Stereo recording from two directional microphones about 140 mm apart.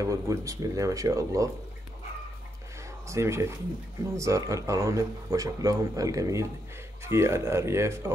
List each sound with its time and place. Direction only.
0.0 s speech: 25° right (ahead or behind)
3.1 s speech: 20° right (ahead or behind)